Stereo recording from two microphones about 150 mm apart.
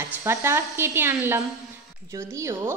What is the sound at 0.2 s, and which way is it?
Speech, 15° right (ahead or behind).